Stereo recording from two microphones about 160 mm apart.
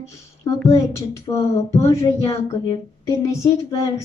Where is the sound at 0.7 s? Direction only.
20° left (ahead or behind).